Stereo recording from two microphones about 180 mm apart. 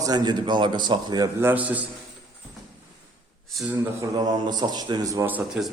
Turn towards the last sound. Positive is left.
turn(degrees=-5)  # may be behind; listen again after turning